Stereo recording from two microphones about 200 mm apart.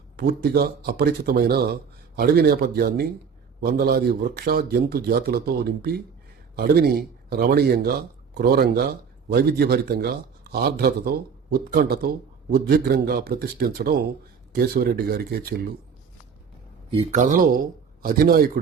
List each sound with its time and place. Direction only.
0.2 s speech: 50° right (ahead or behind)
6.6 s speech: 50° right (ahead or behind)
16.9 s speech: 35° right (ahead or behind)